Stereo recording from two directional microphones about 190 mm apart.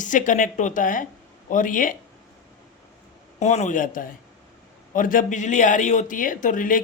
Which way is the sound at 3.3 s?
35° left (ahead or behind).